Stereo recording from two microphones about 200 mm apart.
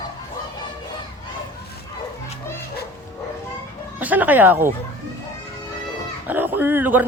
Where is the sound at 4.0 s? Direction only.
10° right (ahead or behind).